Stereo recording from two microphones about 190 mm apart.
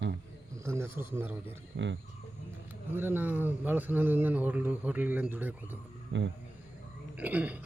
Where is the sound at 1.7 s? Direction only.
70° right (ahead or behind).